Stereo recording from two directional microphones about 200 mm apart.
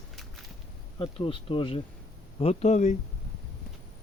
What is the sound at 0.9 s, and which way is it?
Speech, 25° left (ahead or behind).